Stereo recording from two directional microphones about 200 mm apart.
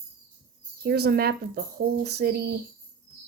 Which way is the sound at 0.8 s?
55° right (ahead or behind).